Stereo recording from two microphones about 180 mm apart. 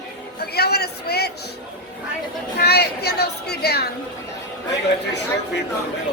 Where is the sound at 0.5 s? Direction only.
60° left (ahead or behind).